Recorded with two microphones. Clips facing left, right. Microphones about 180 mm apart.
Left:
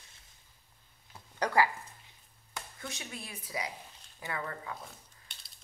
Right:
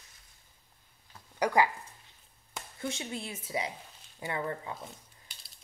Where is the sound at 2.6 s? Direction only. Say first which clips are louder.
Right 6 dB; 25° right (ahead or behind).